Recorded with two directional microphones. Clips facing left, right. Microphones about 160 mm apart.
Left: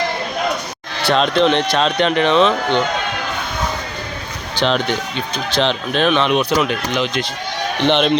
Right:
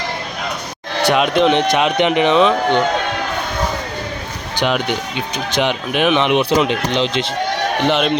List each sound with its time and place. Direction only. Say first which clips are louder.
1.0 s speech: right 1 dB; 15° right (ahead or behind)
4.5 s speech: left 1 dB; 10° right (ahead or behind); by 7.3 s 25° right (ahead or behind)
7.9 s a man's voice: left 2 dB; 5° right (ahead or behind)